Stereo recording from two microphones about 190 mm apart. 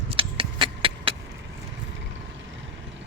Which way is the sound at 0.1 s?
30° right (ahead or behind).